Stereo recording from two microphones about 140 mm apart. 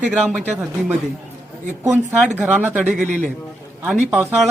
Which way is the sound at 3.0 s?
60° right (ahead or behind).